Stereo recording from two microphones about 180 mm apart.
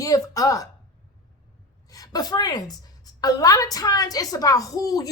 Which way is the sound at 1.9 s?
20° left (ahead or behind).